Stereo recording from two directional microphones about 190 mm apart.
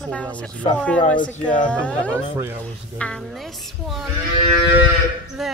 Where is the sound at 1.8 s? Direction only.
5° left (ahead or behind).